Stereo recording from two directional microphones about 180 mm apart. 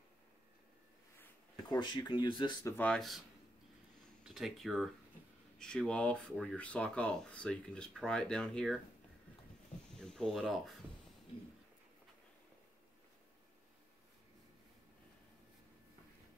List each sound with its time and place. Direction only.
1.2 s speech: 20° left (ahead or behind); by 3.2 s 5° left (ahead or behind)
4.2 s speech: centre (ahead or behind)
9.9 s speech: centre (ahead or behind)